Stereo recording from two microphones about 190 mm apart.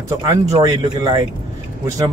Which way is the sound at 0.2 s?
20° right (ahead or behind).